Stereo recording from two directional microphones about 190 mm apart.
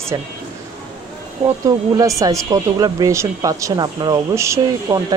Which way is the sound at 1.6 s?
15° right (ahead or behind).